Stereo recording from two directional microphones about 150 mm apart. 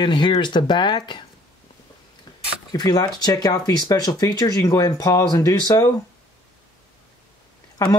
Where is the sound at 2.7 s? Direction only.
25° left (ahead or behind).